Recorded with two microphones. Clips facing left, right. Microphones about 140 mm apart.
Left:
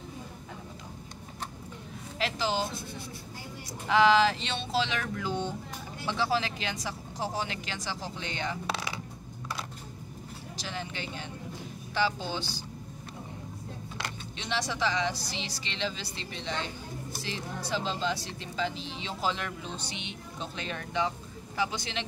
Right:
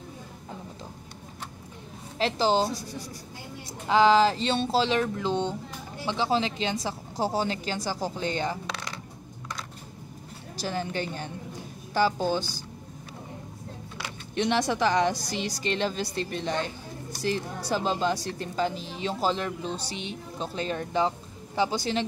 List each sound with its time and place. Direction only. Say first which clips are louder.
2.1 s speech: right 6 dB; 35° right (ahead or behind)
3.9 s speech: right 3 dB; 30° right (ahead or behind)
8.6 s a sound: left 2 dB; 10° left (ahead or behind)
10.6 s a woman's voice: right 8 dB; 45° right (ahead or behind)
14.3 s a woman's voice: right 9 dB; 55° right (ahead or behind)
19.3 s speech: right 6 dB; 35° right (ahead or behind)